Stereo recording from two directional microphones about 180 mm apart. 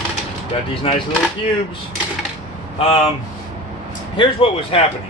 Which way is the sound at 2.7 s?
35° left (ahead or behind).